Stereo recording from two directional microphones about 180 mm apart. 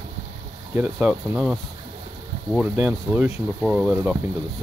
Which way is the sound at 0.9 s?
Centre (ahead or behind).